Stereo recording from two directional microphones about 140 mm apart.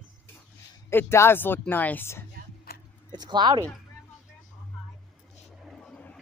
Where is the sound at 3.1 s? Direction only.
30° right (ahead or behind).